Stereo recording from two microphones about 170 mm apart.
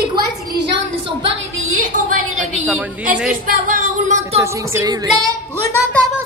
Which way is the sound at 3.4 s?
55° right (ahead or behind).